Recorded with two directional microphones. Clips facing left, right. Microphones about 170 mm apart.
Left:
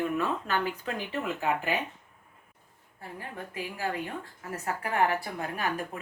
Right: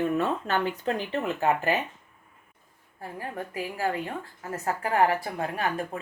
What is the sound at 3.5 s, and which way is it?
A woman's voice, 35° right (ahead or behind).